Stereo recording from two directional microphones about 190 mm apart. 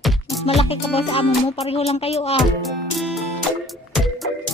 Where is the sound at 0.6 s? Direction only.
30° left (ahead or behind).